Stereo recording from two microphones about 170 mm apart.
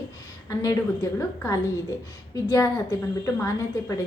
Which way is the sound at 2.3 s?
20° left (ahead or behind).